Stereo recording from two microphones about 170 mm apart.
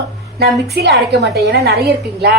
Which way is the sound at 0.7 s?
70° right (ahead or behind).